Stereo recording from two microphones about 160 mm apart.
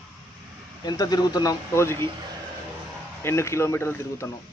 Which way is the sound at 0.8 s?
25° left (ahead or behind).